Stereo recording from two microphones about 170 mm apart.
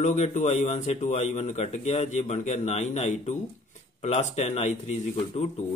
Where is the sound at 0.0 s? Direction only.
45° left (ahead or behind).